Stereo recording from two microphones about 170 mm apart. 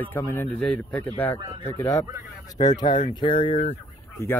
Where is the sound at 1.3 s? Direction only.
25° right (ahead or behind).